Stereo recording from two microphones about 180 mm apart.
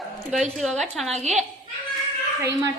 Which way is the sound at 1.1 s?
40° right (ahead or behind).